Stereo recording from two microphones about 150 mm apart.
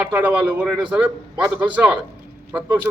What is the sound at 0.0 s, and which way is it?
A man's voice, 10° right (ahead or behind).